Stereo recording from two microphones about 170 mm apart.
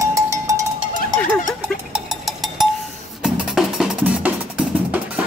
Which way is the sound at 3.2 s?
5° right (ahead or behind).